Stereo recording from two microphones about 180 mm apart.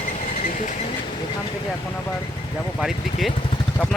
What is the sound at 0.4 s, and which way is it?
Vehicle, 45° left (ahead or behind).